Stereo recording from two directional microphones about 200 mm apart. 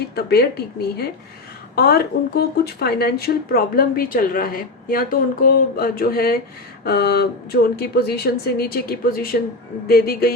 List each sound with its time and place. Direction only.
0.2 s speech: 50° left (ahead or behind)